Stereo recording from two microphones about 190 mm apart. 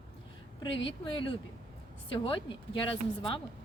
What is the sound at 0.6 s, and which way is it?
Speech, 25° left (ahead or behind).